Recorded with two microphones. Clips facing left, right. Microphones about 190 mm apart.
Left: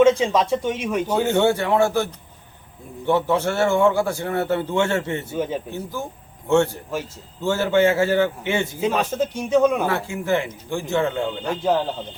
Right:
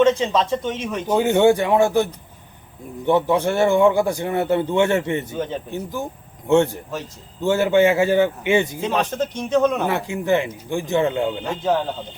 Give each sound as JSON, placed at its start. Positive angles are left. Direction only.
{"t": 0.0, "sound": "a man's voice", "side_deg": 10}
{"t": 1.0, "sound": "a man's voice", "side_deg": -15}
{"t": 3.1, "sound": "a man's voice", "side_deg": -15}
{"t": 5.3, "sound": "a man's voice", "side_deg": 10}
{"t": 5.7, "sound": "a man's voice", "side_deg": -15}
{"t": 7.4, "sound": "a man's voice", "side_deg": -15}
{"t": 8.8, "sound": "a man's voice", "side_deg": 5}
{"t": 9.8, "sound": "a man's voice", "side_deg": -15}